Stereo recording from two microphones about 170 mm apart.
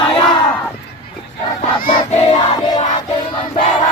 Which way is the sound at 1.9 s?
40° left (ahead or behind).